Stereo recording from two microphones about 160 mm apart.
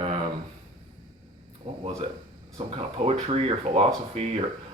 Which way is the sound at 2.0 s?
40° right (ahead or behind).